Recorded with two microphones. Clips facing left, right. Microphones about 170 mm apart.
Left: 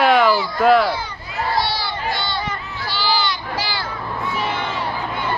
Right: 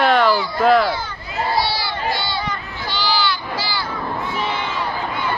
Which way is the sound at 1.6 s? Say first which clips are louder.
Right 1 dB; 5° right (ahead or behind).